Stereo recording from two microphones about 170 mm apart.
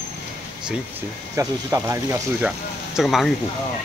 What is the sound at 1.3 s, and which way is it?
Speech, 15° right (ahead or behind).